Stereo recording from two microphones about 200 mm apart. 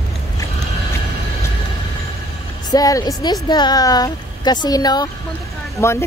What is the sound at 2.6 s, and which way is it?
A woman's voice, 20° left (ahead or behind).